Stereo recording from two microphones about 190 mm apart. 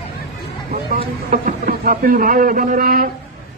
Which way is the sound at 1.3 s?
45° right (ahead or behind).